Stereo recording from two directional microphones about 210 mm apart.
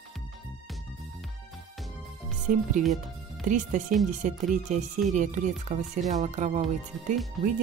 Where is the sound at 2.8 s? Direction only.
35° right (ahead or behind).